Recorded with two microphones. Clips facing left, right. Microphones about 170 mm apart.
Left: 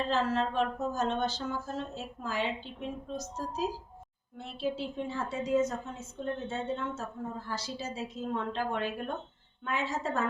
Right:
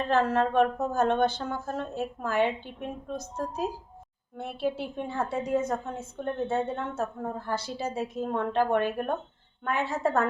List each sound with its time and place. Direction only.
0.1 s a woman's voice: 55° right (ahead or behind)